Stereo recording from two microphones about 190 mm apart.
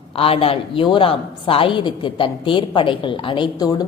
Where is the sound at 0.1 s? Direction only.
30° left (ahead or behind).